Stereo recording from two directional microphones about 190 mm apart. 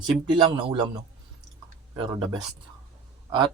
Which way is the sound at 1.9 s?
30° right (ahead or behind).